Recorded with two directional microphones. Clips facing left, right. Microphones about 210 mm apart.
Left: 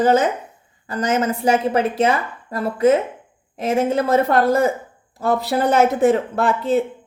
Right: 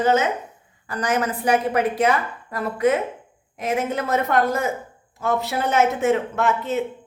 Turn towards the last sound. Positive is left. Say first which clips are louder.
# left 4 dB
turn(degrees=30)  # may be behind; listen again after turning